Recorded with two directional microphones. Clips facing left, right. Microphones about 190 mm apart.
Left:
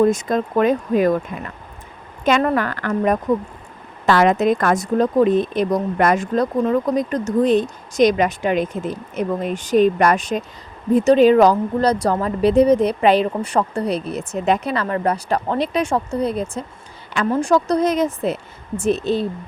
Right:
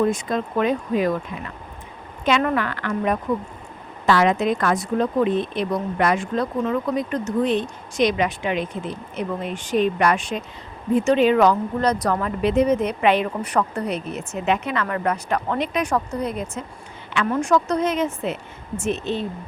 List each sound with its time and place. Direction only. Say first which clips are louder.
0.0 s speech: left 5 dB; 45° left (ahead or behind)
2.2 s speech: left 3 dB; 40° left (ahead or behind)